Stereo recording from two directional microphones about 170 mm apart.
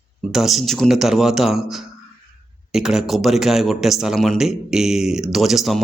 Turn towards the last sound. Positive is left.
turn(degrees=0)  # may be behind; listen again after turning